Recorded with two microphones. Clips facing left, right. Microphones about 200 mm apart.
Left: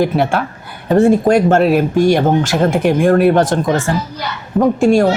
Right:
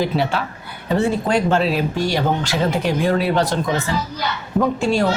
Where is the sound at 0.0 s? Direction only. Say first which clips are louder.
Left 5 dB; 50° left (ahead or behind).